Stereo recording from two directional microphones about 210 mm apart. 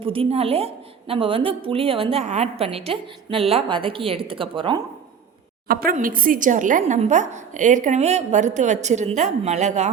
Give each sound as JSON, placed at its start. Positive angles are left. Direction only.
{"t": 0.0, "sound": "a woman's voice", "side_deg": -25}
{"t": 5.6, "sound": "a woman's voice", "side_deg": -45}